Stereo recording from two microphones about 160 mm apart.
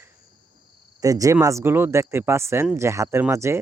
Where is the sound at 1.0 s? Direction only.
20° right (ahead or behind).